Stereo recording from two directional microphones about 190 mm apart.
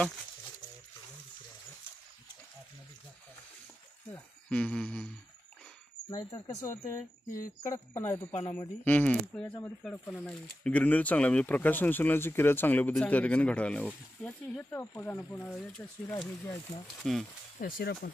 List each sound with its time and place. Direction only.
4.1 s speech: 5° left (ahead or behind)
6.0 s speech: 20° left (ahead or behind)
7.2 s speech: 45° left (ahead or behind)
7.7 s speech: 10° left (ahead or behind)
16.4 s speech: 25° left (ahead or behind)
17.0 s speech: centre (ahead or behind)
17.6 s speech: 50° left (ahead or behind)